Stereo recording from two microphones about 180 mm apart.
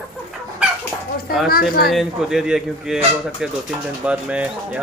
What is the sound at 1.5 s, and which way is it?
Speech, 55° left (ahead or behind).